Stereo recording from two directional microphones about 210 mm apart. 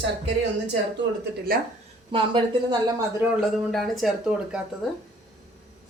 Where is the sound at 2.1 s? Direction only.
25° right (ahead or behind).